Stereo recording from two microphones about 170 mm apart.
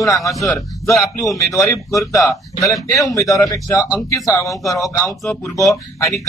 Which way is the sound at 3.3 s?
20° left (ahead or behind).